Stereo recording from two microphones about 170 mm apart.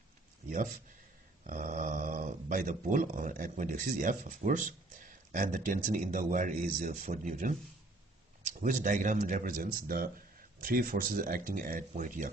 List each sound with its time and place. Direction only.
0.5 s speech: 50° right (ahead or behind)